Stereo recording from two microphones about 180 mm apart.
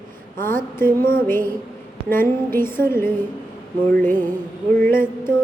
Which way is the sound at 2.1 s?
10° left (ahead or behind).